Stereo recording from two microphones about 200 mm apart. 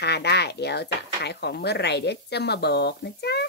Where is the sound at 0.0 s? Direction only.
55° left (ahead or behind).